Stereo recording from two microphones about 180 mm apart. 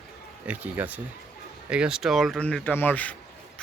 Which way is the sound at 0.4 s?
10° right (ahead or behind).